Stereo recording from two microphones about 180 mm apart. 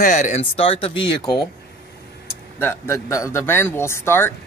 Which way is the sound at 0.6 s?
30° left (ahead or behind).